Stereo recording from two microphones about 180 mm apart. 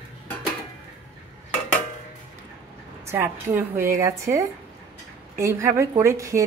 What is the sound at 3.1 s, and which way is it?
A woman's voice, 15° right (ahead or behind).